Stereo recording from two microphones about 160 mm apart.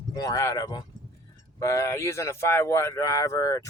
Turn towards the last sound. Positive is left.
turn(degrees=20)  # may be behind; listen again after turning